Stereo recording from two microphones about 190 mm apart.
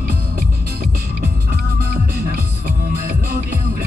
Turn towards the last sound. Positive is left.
turn(degrees=-50)  # may be behind; listen again after turning